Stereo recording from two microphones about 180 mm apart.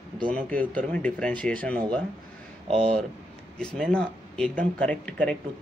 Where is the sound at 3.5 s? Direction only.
5° left (ahead or behind).